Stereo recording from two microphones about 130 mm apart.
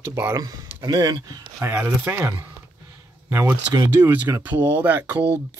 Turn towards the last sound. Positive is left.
turn(degrees=-15)  # may be behind; listen again after turning